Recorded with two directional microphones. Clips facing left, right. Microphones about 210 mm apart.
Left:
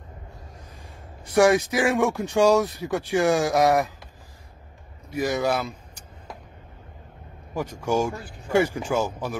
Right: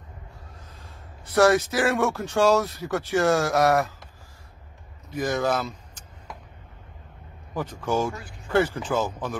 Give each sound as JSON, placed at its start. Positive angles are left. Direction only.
{"t": 0.7, "sound": "speech", "side_deg": 15}
{"t": 5.1, "sound": "speech", "side_deg": 10}
{"t": 7.5, "sound": "speech", "side_deg": 10}